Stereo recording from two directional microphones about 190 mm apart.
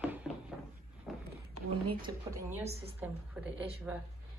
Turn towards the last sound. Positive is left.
turn(degrees=-10)  # may be behind; listen again after turning